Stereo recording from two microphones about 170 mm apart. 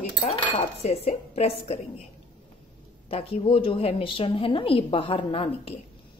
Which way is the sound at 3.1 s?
35° left (ahead or behind).